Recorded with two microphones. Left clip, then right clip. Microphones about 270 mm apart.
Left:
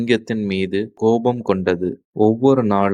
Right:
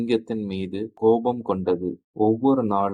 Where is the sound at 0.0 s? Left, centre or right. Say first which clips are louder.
Left 5 dB; left.